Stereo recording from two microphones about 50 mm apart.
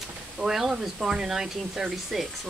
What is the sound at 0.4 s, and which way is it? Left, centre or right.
Speech, centre.